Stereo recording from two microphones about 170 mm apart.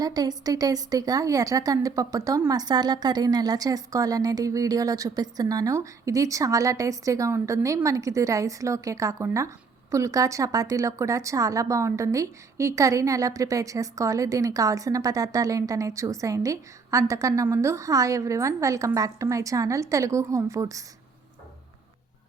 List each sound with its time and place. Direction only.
0.0 s speech: 20° right (ahead or behind)